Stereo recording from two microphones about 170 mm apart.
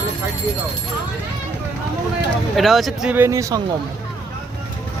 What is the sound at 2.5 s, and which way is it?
Speech, centre (ahead or behind).